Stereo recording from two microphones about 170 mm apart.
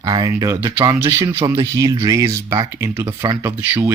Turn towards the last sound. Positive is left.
turn(degrees=-15)  # may be behind; listen again after turning